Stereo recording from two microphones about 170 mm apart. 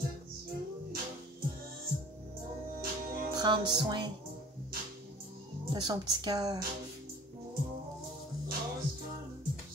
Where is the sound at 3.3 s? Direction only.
25° right (ahead or behind).